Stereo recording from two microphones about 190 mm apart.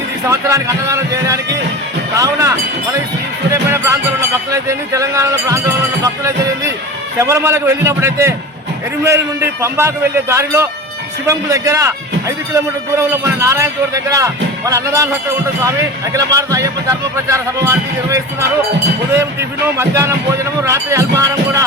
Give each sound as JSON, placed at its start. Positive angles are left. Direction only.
{"t": 0.3, "sound": "a man's voice", "side_deg": -15}
{"t": 7.2, "sound": "a man's voice", "side_deg": -15}
{"t": 19.8, "sound": "a man's voice", "side_deg": -15}